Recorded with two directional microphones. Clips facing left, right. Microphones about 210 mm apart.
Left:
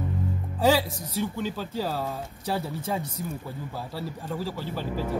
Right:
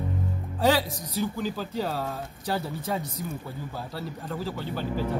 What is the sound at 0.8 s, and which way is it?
Speech, 25° left (ahead or behind).